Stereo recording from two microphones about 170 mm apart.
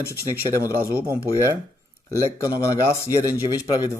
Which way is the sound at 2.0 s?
20° left (ahead or behind).